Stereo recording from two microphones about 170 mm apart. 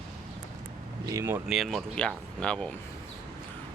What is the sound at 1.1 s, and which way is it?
Speech, 15° right (ahead or behind).